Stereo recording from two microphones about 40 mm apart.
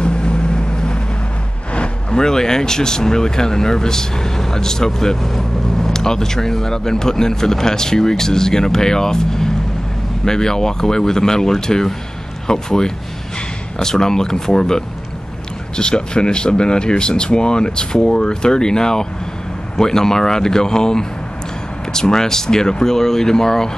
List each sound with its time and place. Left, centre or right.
0.0 s vehicle: left
1.7 s speech: left
15.8 s speech: left